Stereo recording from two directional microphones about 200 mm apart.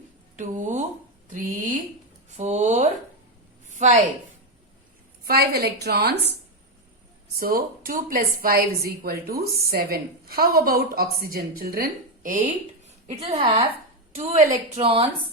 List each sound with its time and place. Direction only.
0.3 s a woman's voice: 40° right (ahead or behind)
3.7 s a sound: 35° right (ahead or behind)
5.2 s a woman's voice: 50° right (ahead or behind)
7.3 s a woman's voice: 45° right (ahead or behind)
13.1 s a woman's voice: 30° right (ahead or behind)